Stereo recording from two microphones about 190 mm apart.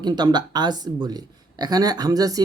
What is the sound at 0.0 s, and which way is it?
Speech, 20° right (ahead or behind).